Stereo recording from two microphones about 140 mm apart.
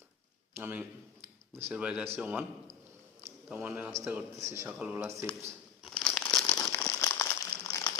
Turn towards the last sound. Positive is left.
turn(degrees=25)  # may be behind; listen again after turning